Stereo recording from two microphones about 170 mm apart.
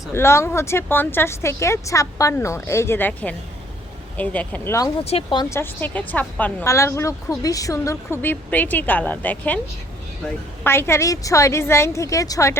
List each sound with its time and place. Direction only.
0.1 s a woman's voice: 15° left (ahead or behind)
5.0 s a woman's voice: 30° left (ahead or behind)